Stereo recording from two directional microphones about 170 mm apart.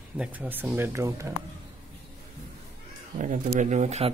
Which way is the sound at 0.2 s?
10° right (ahead or behind).